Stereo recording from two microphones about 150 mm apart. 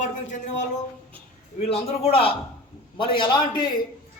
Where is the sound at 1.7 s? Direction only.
40° left (ahead or behind).